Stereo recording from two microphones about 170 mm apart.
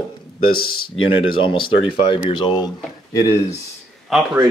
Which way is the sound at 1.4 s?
30° left (ahead or behind).